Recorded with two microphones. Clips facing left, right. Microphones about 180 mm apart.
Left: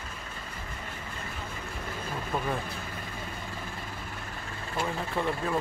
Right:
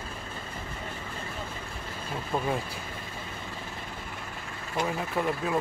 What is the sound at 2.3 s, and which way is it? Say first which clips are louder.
Speech: right 2 dB; 25° right (ahead or behind).